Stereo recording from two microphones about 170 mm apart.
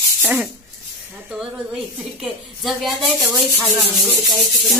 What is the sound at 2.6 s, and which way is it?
Speech, centre (ahead or behind).